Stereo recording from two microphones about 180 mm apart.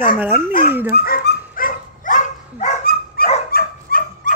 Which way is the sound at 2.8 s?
55° left (ahead or behind).